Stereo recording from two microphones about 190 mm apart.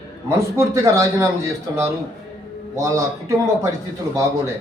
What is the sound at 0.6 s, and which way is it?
Speech, 15° right (ahead or behind).